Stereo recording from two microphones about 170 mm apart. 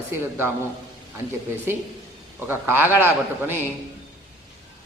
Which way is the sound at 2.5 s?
10° right (ahead or behind).